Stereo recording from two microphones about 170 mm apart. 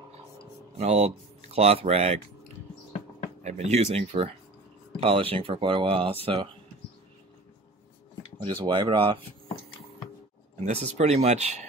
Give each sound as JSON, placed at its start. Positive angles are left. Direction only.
{"t": 0.7, "sound": "speech", "side_deg": -40}
{"t": 3.4, "sound": "speech", "side_deg": -40}
{"t": 8.4, "sound": "speech", "side_deg": -30}
{"t": 10.6, "sound": "speech", "side_deg": -40}